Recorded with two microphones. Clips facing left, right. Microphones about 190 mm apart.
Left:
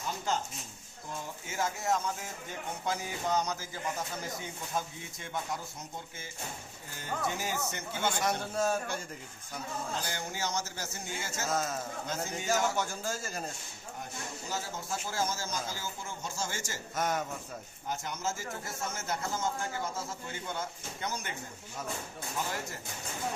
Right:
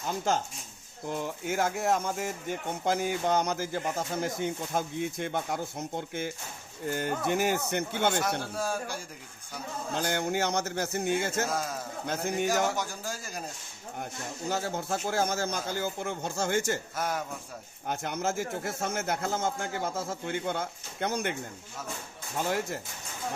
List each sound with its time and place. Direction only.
1.0 s speech: 70° right (ahead or behind)
8.2 s a man's voice: centre (ahead or behind)
9.9 s speech: 65° right (ahead or behind)
11.5 s a man's voice: 10° right (ahead or behind)
12.0 s speech: 60° right (ahead or behind)
12.7 s a man's voice: 15° right (ahead or behind)
14.0 s speech: 60° right (ahead or behind)
16.9 s a man's voice: 10° right (ahead or behind)
17.8 s speech: 60° right (ahead or behind)
22.4 s speech: 65° right (ahead or behind)